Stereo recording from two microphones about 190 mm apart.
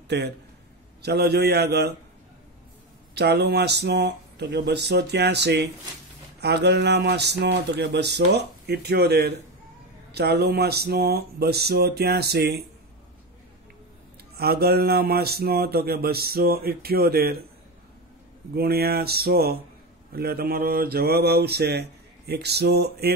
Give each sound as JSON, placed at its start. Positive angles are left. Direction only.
{"t": 0.1, "sound": "mantra", "side_deg": -60}
{"t": 3.2, "sound": "mantra", "side_deg": -60}
{"t": 14.3, "sound": "mantra", "side_deg": -55}
{"t": 18.5, "sound": "mantra", "side_deg": -55}